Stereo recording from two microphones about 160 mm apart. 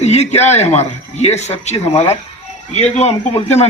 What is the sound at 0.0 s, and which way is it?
A man's voice, 45° left (ahead or behind).